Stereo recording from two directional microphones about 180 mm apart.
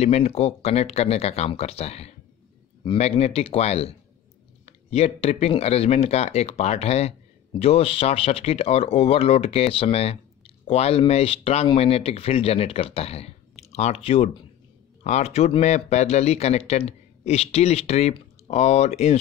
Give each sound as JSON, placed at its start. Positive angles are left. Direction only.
{"t": 0.0, "sound": "speech", "side_deg": 35}